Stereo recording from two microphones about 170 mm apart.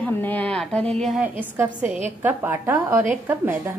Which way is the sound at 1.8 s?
45° right (ahead or behind).